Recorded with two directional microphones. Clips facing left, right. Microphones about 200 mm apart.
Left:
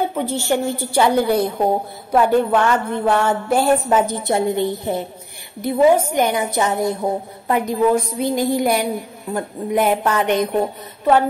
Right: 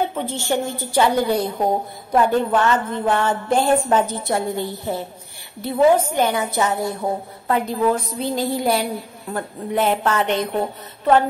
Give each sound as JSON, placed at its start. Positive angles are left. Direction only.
{"t": 0.1, "sound": "a woman's voice", "side_deg": 10}